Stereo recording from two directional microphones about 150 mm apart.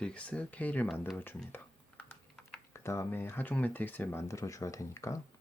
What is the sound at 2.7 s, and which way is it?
Speech, 20° left (ahead or behind).